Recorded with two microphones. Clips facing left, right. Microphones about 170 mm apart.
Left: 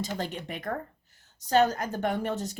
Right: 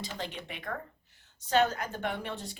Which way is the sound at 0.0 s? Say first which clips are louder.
Left 6 dB; 45° left (ahead or behind).